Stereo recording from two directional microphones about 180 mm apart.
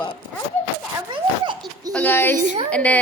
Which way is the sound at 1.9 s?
10° left (ahead or behind).